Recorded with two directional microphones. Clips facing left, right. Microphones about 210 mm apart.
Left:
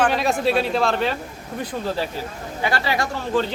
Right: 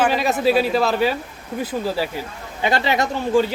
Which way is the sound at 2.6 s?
20° right (ahead or behind).